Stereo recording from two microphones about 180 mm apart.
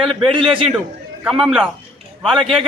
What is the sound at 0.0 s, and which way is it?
A man's voice, centre (ahead or behind).